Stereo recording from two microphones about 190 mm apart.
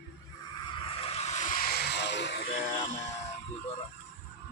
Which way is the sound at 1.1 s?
35° left (ahead or behind).